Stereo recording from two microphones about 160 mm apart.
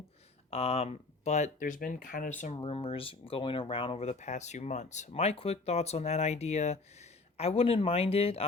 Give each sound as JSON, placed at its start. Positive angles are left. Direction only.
{"t": 0.5, "sound": "speech", "side_deg": 40}
{"t": 2.6, "sound": "speech", "side_deg": 35}